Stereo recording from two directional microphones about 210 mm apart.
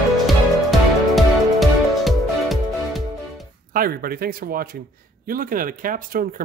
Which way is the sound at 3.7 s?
45° right (ahead or behind).